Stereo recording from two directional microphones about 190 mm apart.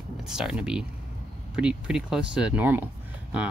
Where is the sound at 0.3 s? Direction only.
5° right (ahead or behind).